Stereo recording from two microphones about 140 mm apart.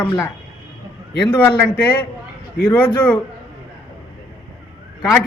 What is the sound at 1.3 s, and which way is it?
A man's voice, 15° left (ahead or behind).